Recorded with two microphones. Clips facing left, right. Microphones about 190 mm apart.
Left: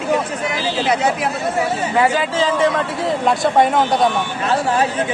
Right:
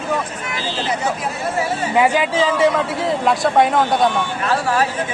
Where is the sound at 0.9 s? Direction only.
75° left (ahead or behind).